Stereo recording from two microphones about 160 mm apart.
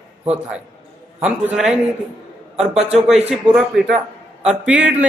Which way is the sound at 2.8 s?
40° right (ahead or behind).